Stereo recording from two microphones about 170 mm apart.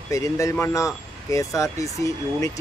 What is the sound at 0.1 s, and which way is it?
Speech, 20° left (ahead or behind).